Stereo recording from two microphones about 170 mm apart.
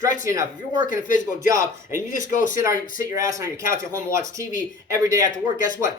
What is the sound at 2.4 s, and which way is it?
Speech, 50° left (ahead or behind).